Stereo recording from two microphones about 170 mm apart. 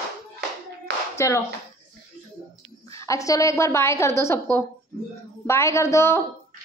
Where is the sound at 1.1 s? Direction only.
20° left (ahead or behind).